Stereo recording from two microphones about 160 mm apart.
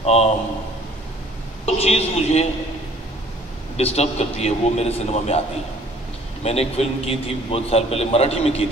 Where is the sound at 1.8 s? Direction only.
40° left (ahead or behind).